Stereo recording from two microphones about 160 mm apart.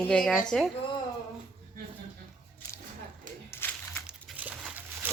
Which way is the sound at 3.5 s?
15° left (ahead or behind).